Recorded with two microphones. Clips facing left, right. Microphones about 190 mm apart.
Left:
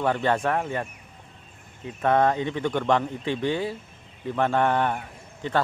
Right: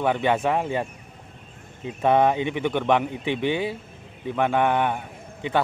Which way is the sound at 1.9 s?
15° right (ahead or behind).